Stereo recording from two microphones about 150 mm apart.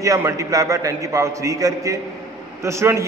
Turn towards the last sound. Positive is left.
turn(degrees=-20)  # may be behind; listen again after turning